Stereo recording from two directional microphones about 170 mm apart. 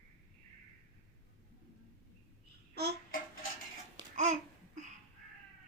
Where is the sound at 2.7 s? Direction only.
75° right (ahead or behind).